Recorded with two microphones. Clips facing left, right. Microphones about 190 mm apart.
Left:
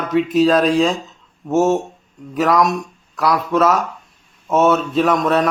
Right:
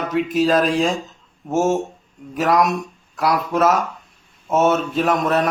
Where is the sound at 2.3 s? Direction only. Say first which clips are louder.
Left 2 dB; centre (ahead or behind).